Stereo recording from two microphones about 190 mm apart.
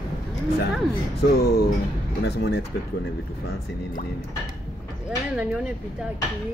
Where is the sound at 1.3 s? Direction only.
55° left (ahead or behind).